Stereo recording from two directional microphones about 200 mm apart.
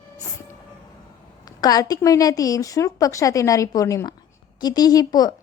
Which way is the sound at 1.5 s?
20° left (ahead or behind).